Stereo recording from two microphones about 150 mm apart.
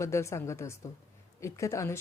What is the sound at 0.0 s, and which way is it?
A woman's voice, 20° left (ahead or behind).